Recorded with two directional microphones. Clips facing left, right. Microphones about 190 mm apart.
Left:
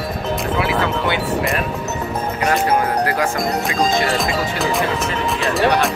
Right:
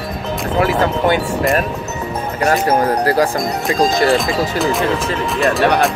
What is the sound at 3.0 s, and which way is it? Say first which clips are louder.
Speech: right 5 dB; 35° right (ahead or behind).